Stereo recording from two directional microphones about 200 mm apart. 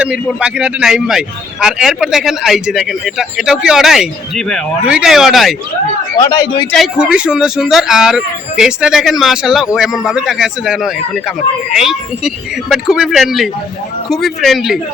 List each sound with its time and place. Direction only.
0.0 s speech: 5° right (ahead or behind)
6.1 s a man's voice: 20° left (ahead or behind)
6.7 s speech: centre (ahead or behind)